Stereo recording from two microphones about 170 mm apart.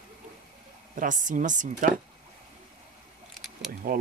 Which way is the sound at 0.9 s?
50° right (ahead or behind).